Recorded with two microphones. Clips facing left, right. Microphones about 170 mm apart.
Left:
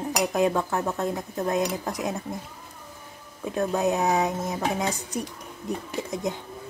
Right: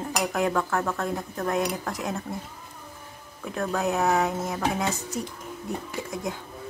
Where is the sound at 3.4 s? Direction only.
20° left (ahead or behind).